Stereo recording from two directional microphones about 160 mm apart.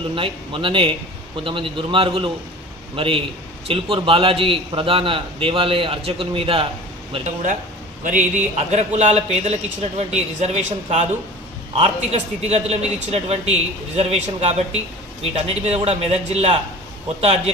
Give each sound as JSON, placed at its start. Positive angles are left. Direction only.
{"t": 0.1, "sound": "a man's voice", "side_deg": -35}
{"t": 8.0, "sound": "a man's voice", "side_deg": -50}